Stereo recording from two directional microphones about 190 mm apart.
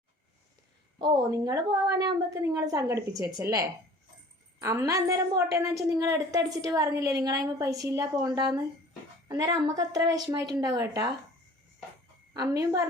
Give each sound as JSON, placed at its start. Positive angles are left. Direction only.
{"t": 0.9, "sound": "a woman's voice", "side_deg": -25}
{"t": 12.3, "sound": "a woman's voice", "side_deg": -15}